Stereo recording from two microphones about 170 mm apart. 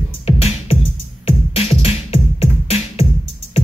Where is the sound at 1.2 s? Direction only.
35° left (ahead or behind).